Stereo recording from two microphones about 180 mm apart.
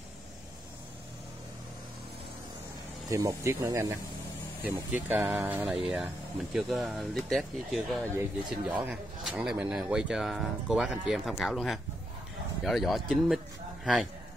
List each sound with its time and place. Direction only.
3.1 s speech: 15° right (ahead or behind)
5.0 s speech: 10° right (ahead or behind)